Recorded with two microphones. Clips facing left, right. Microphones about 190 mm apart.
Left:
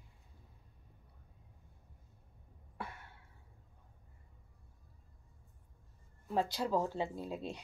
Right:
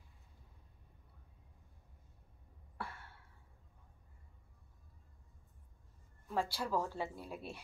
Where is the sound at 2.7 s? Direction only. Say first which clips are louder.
Left 1 dB; 20° left (ahead or behind).